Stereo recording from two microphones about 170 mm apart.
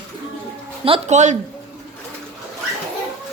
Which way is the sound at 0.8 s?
40° right (ahead or behind).